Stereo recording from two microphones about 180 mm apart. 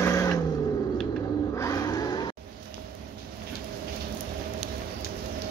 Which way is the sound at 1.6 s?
20° left (ahead or behind).